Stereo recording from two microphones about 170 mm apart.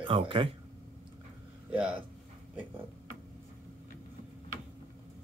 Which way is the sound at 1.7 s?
5° right (ahead or behind).